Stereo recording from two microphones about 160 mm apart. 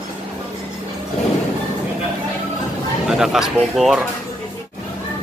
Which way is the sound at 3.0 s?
Centre (ahead or behind).